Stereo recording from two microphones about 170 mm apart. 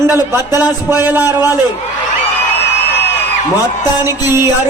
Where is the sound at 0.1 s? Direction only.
20° left (ahead or behind).